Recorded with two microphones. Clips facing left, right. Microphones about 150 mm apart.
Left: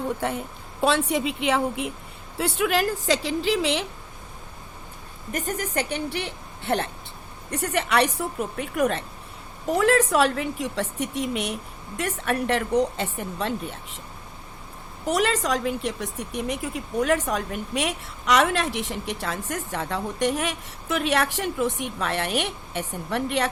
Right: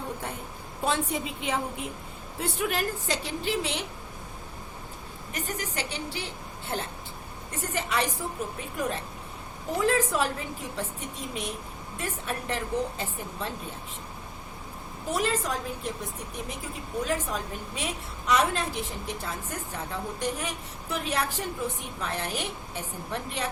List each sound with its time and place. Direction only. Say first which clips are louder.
0.2 s a woman's voice: left 8 dB; 90° left
2.4 s a woman's voice: left 6 dB; 90° left
5.3 s a woman's voice: left 7 dB; 45° left (ahead or behind); by 13.5 s 75° left (ahead or behind)
15.0 s a woman's voice: left 5 dB; 80° left